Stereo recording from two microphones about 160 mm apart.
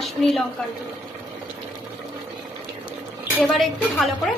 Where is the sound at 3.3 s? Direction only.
5° right (ahead or behind).